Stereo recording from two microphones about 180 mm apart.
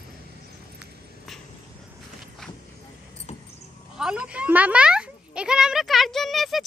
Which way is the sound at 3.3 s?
40° left (ahead or behind).